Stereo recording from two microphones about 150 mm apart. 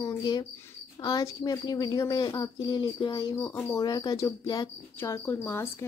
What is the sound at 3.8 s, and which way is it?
Speech, 25° left (ahead or behind).